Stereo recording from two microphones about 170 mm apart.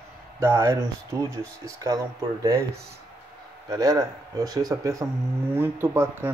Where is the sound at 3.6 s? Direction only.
20° right (ahead or behind).